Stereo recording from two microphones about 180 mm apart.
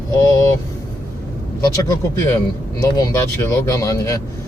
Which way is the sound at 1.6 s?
20° left (ahead or behind).